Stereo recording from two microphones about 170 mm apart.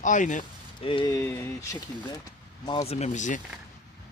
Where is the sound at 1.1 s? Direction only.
15° left (ahead or behind).